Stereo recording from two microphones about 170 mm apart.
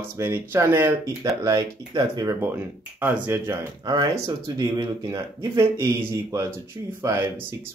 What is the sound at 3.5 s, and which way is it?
Speech, 25° right (ahead or behind).